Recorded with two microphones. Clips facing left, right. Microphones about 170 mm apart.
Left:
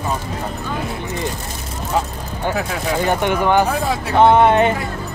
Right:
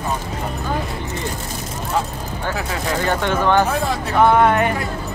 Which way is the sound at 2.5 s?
15° left (ahead or behind).